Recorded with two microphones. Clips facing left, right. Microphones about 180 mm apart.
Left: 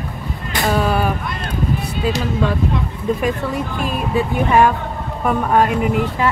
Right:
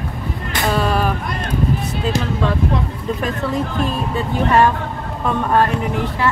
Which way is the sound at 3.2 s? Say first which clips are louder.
Even; 10° left (ahead or behind).